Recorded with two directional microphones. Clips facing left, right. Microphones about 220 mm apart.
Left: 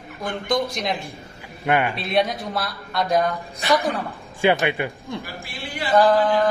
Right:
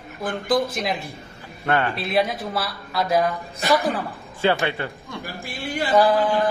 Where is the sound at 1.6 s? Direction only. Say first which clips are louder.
Left 1 dB; 10° left (ahead or behind).